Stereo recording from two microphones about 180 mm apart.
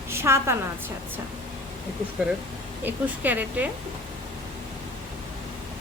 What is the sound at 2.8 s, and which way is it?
Speech, 10° right (ahead or behind).